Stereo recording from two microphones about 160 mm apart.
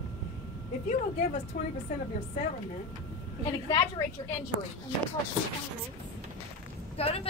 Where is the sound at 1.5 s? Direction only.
55° left (ahead or behind).